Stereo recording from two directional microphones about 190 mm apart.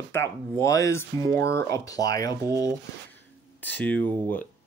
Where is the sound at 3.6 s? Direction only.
10° left (ahead or behind).